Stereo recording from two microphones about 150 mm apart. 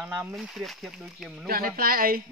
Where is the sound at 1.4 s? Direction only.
75° right (ahead or behind).